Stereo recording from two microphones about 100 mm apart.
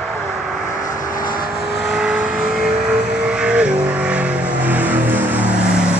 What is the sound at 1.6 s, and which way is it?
Vehicle, 5° right (ahead or behind).